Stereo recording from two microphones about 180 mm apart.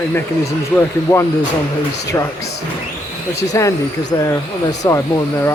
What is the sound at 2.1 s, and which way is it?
Speech, 15° left (ahead or behind).